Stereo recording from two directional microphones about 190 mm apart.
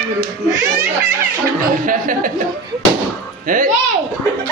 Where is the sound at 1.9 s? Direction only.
45° right (ahead or behind).